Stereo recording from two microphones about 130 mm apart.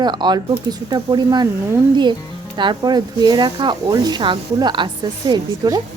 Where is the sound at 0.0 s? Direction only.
35° right (ahead or behind).